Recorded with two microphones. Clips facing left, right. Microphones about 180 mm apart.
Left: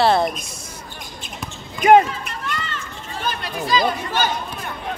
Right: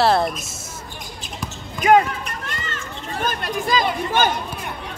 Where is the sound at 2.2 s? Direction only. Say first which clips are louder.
Left 2 dB; 45° right (ahead or behind).